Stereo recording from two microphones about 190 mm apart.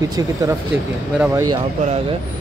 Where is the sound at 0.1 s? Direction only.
20° right (ahead or behind).